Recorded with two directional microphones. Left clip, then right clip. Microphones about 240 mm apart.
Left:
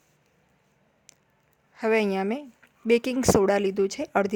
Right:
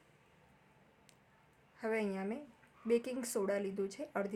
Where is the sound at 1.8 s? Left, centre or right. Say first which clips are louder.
Left 14 dB; left.